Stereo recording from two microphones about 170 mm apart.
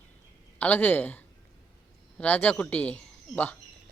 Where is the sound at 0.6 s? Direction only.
10° left (ahead or behind).